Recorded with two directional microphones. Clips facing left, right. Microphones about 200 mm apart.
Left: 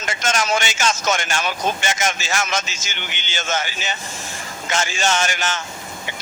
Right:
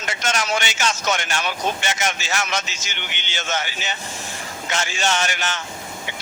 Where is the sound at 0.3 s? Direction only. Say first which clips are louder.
Left 3 dB; 45° left (ahead or behind).